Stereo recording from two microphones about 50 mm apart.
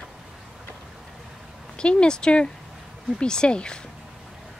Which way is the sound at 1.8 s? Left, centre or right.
Centre.